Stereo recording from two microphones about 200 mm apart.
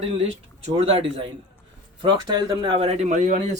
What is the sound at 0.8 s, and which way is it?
Speech, 30° right (ahead or behind).